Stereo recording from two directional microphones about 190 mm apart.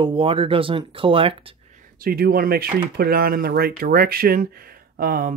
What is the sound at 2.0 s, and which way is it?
Speech, 50° right (ahead or behind).